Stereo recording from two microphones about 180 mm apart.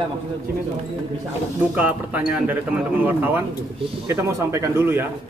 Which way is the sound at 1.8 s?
10° right (ahead or behind).